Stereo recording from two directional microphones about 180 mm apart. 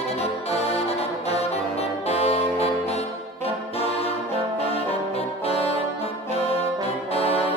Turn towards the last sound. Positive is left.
turn(degrees=35)  # may be behind; listen again after turning